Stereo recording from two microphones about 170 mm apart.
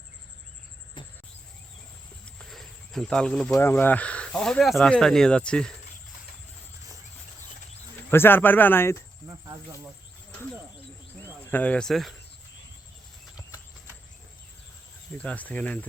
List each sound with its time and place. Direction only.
1.0 s insect: 30° left (ahead or behind)
2.4 s speech: centre (ahead or behind)
8.1 s speech: 10° left (ahead or behind)
9.2 s speech: 20° right (ahead or behind)
11.5 s speech: 5° left (ahead or behind)
15.2 s speech: 10° left (ahead or behind)